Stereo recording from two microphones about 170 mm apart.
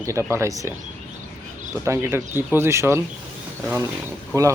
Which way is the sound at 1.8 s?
15° right (ahead or behind).